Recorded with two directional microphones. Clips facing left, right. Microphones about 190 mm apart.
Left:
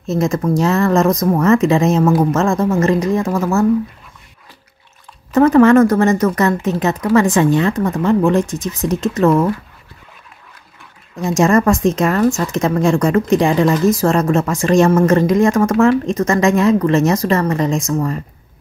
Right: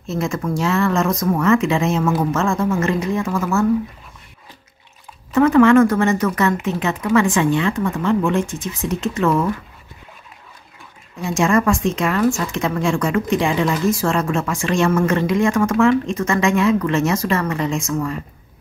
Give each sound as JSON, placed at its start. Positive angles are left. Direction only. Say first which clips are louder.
{"t": 0.0, "sound": "speech", "louder": "left 6 dB", "side_deg": 40}
{"t": 5.3, "sound": "speech", "louder": "left 3 dB", "side_deg": 40}
{"t": 11.2, "sound": "speech", "louder": "left 4 dB", "side_deg": 40}